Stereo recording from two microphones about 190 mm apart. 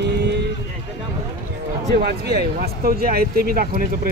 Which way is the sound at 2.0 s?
50° right (ahead or behind).